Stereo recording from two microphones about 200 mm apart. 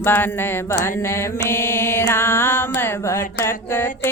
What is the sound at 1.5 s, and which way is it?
Mantra, 10° left (ahead or behind).